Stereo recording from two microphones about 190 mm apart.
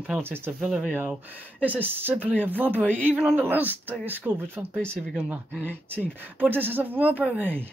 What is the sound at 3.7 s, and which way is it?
Speech, 10° left (ahead or behind).